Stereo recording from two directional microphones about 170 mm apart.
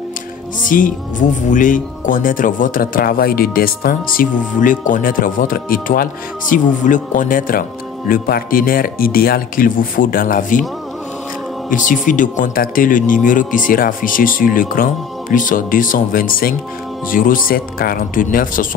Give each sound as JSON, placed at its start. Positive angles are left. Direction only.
{"t": 0.7, "sound": "speech", "side_deg": 50}
{"t": 11.7, "sound": "speech", "side_deg": 50}